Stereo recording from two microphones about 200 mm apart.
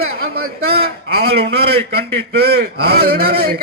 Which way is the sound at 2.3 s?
50° right (ahead or behind).